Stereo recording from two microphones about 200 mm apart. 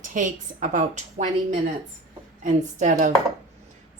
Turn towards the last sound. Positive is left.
turn(degrees=-40)  # may be behind; listen again after turning